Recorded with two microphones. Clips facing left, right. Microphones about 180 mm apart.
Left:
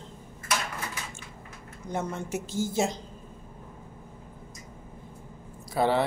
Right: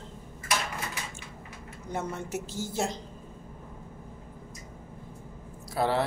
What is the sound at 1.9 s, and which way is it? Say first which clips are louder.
Speech: left 2 dB; 5° right (ahead or behind).